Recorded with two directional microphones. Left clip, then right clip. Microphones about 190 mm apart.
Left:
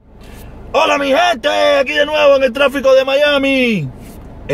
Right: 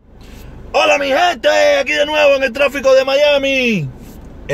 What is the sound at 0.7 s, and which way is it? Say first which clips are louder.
Speech: even; 5° left (ahead or behind).